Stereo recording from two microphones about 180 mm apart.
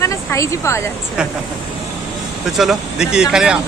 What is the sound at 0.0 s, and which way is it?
Speech, 15° left (ahead or behind).